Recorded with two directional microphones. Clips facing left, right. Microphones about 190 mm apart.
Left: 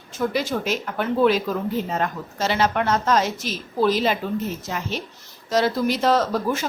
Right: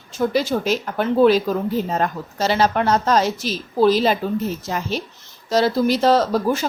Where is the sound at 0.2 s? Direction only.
35° right (ahead or behind).